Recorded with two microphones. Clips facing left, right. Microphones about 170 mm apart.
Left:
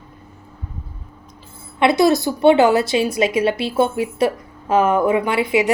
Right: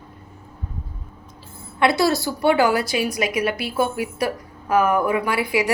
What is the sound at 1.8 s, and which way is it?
A woman's voice, 20° left (ahead or behind).